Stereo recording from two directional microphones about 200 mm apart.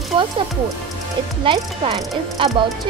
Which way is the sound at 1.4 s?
25° right (ahead or behind).